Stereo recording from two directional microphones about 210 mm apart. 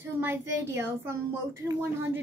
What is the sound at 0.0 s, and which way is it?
A woman's voice, 10° right (ahead or behind).